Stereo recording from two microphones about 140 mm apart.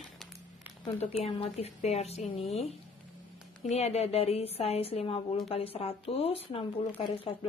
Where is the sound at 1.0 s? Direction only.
45° left (ahead or behind).